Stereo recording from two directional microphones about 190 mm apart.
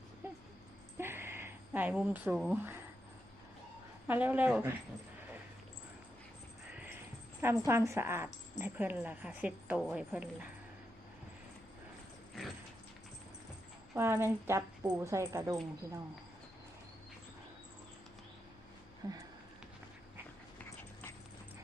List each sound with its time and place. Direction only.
0.9 s a sound: 10° right (ahead or behind)
4.0 s a woman's voice: 10° right (ahead or behind)
6.7 s a sound: 10° right (ahead or behind)
7.4 s a woman's voice: 15° right (ahead or behind)
13.9 s a woman's voice: 10° right (ahead or behind)
19.0 s speech: 20° right (ahead or behind)
20.6 s dog: 10° left (ahead or behind)